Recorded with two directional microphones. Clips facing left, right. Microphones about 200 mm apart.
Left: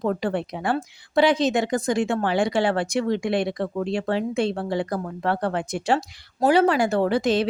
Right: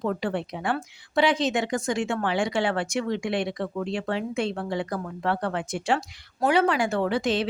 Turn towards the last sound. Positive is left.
turn(degrees=40)  # may be behind; listen again after turning